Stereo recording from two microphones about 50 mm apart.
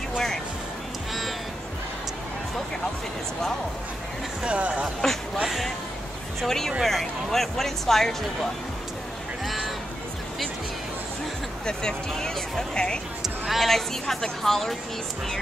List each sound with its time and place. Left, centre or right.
4.5 s speech: right
5.0 s speech: centre
6.4 s speech: centre
11.6 s speech: centre
13.2 s speech: centre